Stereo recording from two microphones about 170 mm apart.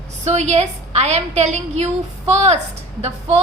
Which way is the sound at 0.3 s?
40° right (ahead or behind).